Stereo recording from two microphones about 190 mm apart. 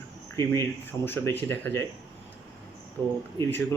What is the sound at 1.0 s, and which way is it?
Speech, 10° left (ahead or behind).